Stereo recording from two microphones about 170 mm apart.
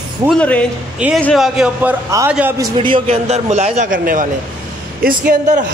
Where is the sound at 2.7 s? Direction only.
30° right (ahead or behind).